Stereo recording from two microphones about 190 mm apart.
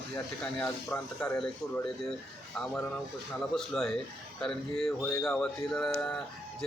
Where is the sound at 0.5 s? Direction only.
5° left (ahead or behind).